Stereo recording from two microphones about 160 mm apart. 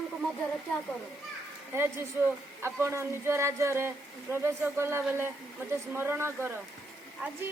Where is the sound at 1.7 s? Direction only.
15° right (ahead or behind).